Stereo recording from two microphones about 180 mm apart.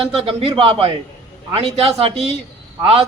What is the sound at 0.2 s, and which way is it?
A man's voice, 30° right (ahead or behind).